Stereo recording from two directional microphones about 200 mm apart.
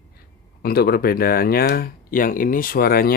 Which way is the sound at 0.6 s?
50° left (ahead or behind).